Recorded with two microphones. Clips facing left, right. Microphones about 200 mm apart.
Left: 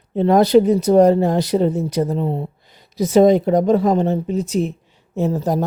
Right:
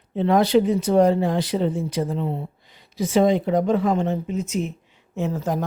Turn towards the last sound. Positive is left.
turn(degrees=35)  # may be behind; listen again after turning